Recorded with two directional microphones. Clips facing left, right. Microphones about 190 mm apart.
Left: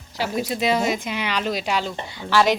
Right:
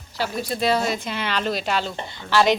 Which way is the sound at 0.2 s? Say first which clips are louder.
Left 1 dB; 15° left (ahead or behind).